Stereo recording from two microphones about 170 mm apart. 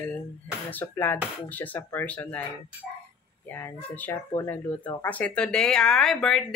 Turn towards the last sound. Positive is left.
turn(degrees=5)  # may be behind; listen again after turning